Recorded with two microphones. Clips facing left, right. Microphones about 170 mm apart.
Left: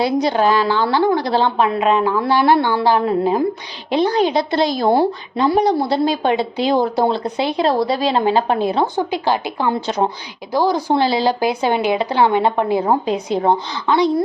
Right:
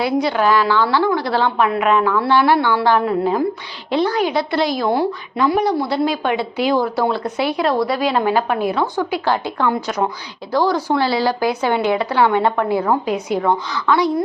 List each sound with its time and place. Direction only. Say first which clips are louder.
0.0 s a woman's voice: left 1 dB; 40° left (ahead or behind)
0.3 s a woman's voice: right 1 dB; 25° left (ahead or behind)
2.8 s a woman's voice: even; 30° left (ahead or behind)
3.9 s a woman's voice: left 2 dB; 20° left (ahead or behind)
9.0 s speech: even; 20° left (ahead or behind)
9.8 s a woman's voice: left 2 dB; 25° left (ahead or behind)
10.5 s a woman's voice: left 1 dB; 10° left (ahead or behind)